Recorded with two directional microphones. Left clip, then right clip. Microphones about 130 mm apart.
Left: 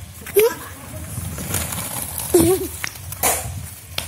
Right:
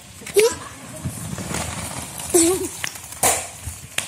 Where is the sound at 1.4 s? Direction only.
45° left (ahead or behind).